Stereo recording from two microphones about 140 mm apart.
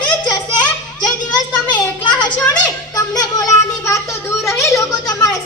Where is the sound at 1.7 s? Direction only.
30° left (ahead or behind).